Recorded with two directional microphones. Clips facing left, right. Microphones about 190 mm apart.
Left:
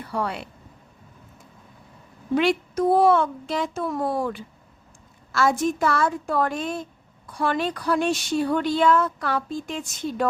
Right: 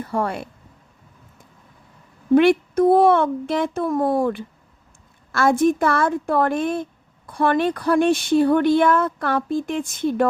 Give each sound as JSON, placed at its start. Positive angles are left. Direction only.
{"t": 0.0, "sound": "speech", "side_deg": -50}
{"t": 2.3, "sound": "speech", "side_deg": -55}